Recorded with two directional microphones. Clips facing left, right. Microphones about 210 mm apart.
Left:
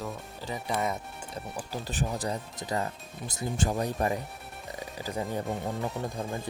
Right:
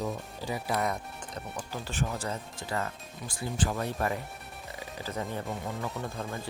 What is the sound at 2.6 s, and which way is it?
Speech, 15° left (ahead or behind).